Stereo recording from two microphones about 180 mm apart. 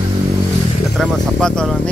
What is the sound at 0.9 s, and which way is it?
Speech, 5° left (ahead or behind).